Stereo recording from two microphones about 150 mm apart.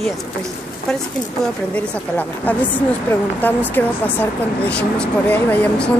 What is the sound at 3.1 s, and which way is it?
Speech, 10° left (ahead or behind).